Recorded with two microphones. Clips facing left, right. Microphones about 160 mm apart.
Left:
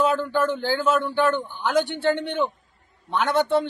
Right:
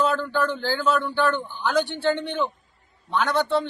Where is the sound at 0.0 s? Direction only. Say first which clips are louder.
Left 2 dB; 20° left (ahead or behind).